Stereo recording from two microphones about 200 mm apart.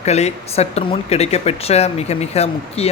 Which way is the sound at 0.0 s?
35° left (ahead or behind).